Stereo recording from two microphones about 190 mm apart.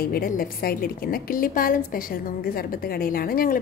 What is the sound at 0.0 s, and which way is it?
A woman's voice, 50° left (ahead or behind).